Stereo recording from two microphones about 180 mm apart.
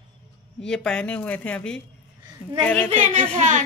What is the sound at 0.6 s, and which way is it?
Speech, 5° left (ahead or behind).